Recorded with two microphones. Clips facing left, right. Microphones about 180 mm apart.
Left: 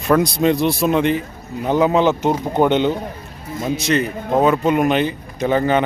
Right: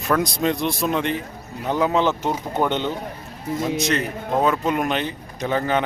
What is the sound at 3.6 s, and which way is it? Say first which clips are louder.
Speech: left 5 dB; centre (ahead or behind).